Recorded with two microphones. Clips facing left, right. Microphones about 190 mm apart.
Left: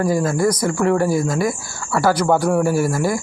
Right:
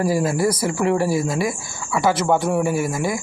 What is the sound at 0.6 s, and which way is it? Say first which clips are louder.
Speech: left 2 dB; 10° right (ahead or behind).